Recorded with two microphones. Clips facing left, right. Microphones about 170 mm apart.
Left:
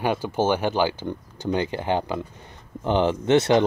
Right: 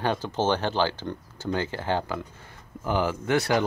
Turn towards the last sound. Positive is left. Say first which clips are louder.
# left 6 dB
turn(degrees=25)  # may be behind; listen again after turning